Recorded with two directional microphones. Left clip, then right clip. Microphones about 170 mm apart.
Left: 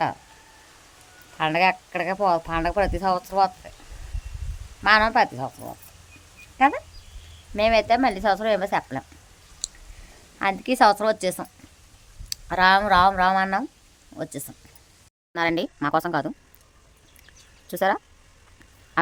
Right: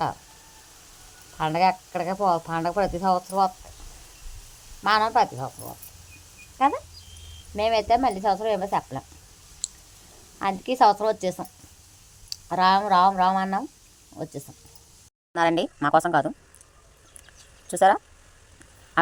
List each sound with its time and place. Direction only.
1.4 s speech: 15° left (ahead or behind)
4.8 s speech: 15° left (ahead or behind)
9.6 s a sound: 15° left (ahead or behind)
10.3 s speech: 15° left (ahead or behind)
15.3 s speech: 5° left (ahead or behind)
17.7 s speech: 10° left (ahead or behind)